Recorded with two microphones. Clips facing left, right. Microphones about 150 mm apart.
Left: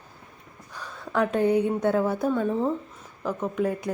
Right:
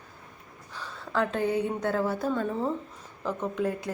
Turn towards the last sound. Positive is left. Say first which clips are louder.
# left 3 dB
turn(degrees=10)  # may be behind; listen again after turning